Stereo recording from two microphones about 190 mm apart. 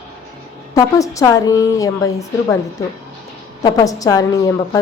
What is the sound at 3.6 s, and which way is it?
A woman's voice, 20° left (ahead or behind).